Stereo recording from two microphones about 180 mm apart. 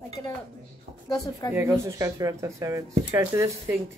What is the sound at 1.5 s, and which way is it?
Speech, 15° right (ahead or behind).